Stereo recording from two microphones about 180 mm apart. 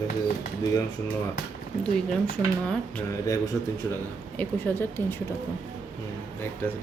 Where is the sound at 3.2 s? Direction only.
15° left (ahead or behind).